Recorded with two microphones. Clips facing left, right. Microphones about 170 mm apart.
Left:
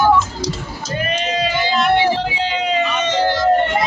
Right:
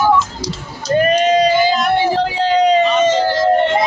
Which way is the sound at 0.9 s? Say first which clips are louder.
Right 9 dB; 45° right (ahead or behind).